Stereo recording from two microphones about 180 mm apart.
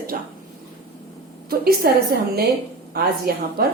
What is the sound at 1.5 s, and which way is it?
A woman's voice, 60° right (ahead or behind).